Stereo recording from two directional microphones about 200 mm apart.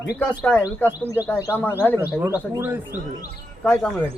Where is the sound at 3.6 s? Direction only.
5° left (ahead or behind).